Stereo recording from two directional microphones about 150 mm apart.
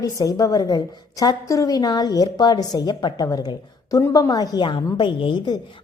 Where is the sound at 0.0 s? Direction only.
25° left (ahead or behind).